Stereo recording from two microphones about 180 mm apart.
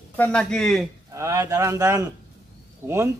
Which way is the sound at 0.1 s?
5° left (ahead or behind).